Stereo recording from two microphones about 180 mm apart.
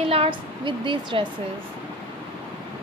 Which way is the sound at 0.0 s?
30° right (ahead or behind).